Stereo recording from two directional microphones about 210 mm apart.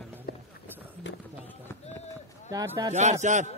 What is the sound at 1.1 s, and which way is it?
Run, 60° left (ahead or behind).